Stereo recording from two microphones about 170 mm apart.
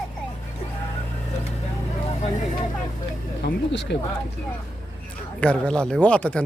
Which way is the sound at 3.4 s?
90° left.